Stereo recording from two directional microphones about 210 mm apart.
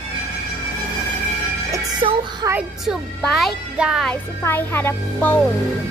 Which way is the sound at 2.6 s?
Centre (ahead or behind).